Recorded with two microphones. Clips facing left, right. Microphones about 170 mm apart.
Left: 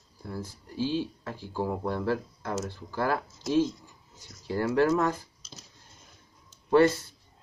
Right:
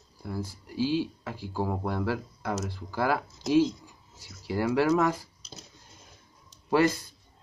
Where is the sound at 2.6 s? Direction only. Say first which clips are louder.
Right 2 dB; 10° right (ahead or behind).